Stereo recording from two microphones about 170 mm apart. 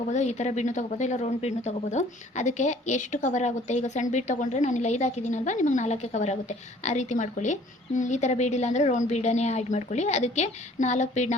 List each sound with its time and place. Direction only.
0.1 s a woman's voice: 45° left (ahead or behind)